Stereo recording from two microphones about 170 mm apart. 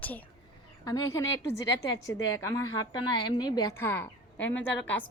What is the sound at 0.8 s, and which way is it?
A woman's voice, 20° left (ahead or behind).